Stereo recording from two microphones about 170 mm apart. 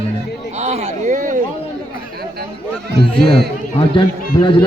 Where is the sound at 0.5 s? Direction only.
40° right (ahead or behind).